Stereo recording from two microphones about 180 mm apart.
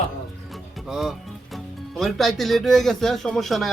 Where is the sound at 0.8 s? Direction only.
Centre (ahead or behind).